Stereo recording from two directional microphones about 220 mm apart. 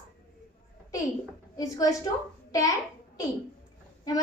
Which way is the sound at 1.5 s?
15° left (ahead or behind).